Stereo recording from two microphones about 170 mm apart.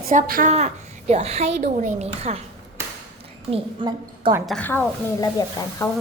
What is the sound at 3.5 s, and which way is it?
Speech, 30° right (ahead or behind).